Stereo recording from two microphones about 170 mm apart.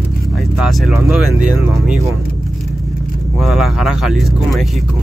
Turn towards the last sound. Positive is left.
turn(degrees=0)  # may be behind; listen again after turning